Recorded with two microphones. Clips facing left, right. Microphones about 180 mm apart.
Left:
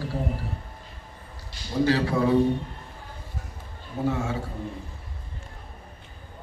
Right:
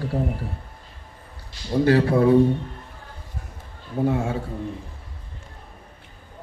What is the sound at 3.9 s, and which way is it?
Speech, 55° right (ahead or behind).